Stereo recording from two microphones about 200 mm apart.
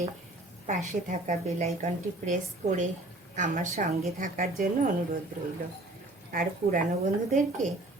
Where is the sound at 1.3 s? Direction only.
30° right (ahead or behind).